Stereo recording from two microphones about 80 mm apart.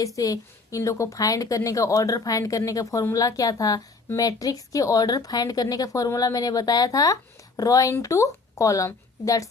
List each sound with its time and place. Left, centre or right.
0.2 s a woman's voice: left